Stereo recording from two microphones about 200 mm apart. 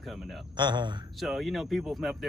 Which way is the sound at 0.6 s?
20° right (ahead or behind).